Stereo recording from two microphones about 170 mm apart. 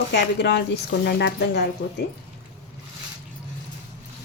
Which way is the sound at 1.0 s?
70° left (ahead or behind).